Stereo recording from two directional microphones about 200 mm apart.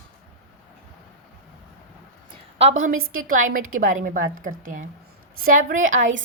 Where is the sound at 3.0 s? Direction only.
90° right.